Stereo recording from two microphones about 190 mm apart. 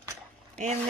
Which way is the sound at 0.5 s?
40° right (ahead or behind).